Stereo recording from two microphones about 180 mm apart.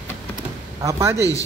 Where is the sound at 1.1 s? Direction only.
20° left (ahead or behind).